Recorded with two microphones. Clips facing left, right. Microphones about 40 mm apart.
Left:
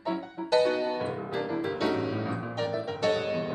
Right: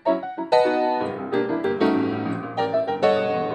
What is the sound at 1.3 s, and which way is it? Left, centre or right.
Music, right.